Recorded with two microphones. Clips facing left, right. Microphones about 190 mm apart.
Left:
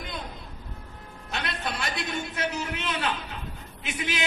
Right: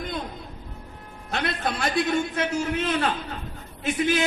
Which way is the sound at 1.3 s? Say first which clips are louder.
Right 5 dB; 50° right (ahead or behind).